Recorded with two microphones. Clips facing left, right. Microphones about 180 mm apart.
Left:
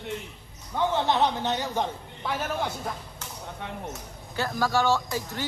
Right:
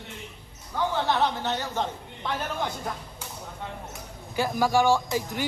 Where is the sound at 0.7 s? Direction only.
20° left (ahead or behind).